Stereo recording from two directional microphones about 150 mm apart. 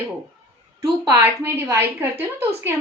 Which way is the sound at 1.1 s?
15° right (ahead or behind).